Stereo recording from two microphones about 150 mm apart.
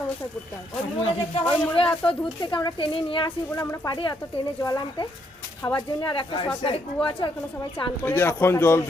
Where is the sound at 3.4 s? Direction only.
20° left (ahead or behind).